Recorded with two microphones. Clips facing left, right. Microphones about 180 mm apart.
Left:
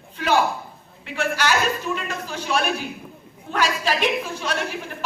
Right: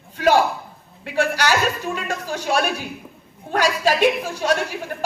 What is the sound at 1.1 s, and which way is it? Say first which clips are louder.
A woman's voice: right 3 dB; 45° right (ahead or behind).